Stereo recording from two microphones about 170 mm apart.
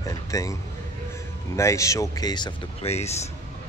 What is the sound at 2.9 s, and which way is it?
Speech, 40° left (ahead or behind).